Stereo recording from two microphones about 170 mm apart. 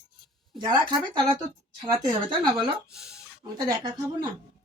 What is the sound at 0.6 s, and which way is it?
Speech, 25° right (ahead or behind).